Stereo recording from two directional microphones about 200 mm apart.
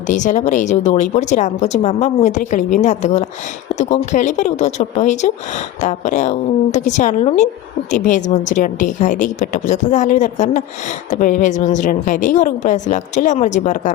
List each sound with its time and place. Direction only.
0.1 s a woman's voice: 40° left (ahead or behind)